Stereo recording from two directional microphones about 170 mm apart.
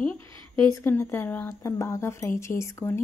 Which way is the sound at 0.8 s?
15° left (ahead or behind).